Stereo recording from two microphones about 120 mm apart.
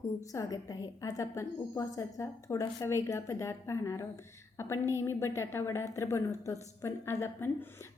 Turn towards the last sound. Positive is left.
turn(degrees=20)  # may be behind; listen again after turning